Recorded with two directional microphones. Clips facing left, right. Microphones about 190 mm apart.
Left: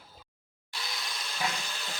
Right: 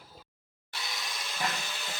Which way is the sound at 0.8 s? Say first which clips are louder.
Even; centre (ahead or behind).